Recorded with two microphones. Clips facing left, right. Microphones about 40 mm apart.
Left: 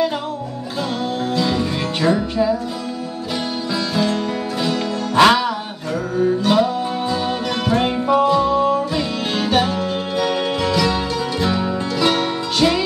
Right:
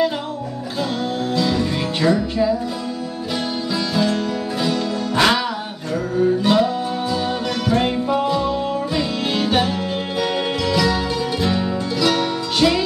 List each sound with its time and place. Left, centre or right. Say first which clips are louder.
1.3 s music: right 1 dB; centre
4.6 s music: right 1 dB; centre
6.4 s music: even; centre
12.0 s music: left 1 dB; left
12.6 s music: even; centre